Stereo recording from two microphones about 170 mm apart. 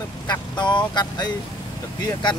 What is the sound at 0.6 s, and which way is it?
Speech, 25° left (ahead or behind).